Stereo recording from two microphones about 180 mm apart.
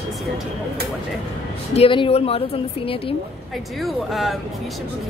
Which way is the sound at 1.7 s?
30° left (ahead or behind).